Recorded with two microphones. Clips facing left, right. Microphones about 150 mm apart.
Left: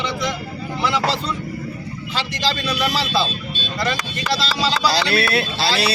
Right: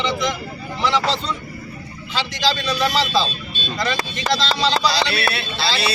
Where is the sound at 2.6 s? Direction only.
5° left (ahead or behind).